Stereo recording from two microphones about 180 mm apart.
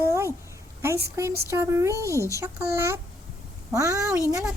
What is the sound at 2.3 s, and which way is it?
Speech, 15° right (ahead or behind).